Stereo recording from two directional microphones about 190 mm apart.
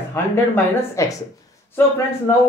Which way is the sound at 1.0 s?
15° left (ahead or behind).